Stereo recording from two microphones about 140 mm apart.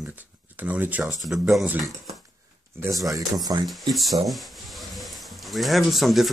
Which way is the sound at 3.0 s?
25° right (ahead or behind).